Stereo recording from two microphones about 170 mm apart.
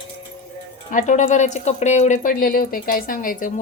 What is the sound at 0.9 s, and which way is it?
Speech, 45° left (ahead or behind).